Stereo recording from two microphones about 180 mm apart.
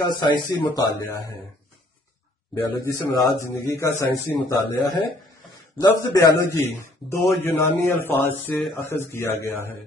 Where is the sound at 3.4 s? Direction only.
15° left (ahead or behind).